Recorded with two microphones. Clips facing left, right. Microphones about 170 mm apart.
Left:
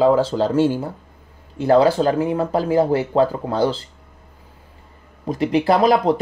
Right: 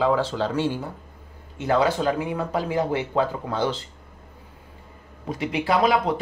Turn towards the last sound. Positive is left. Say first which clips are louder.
# left 5 dB
turn(degrees=40)  # may be behind; listen again after turning